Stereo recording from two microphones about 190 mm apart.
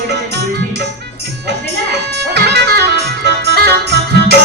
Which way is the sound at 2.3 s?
60° right (ahead or behind).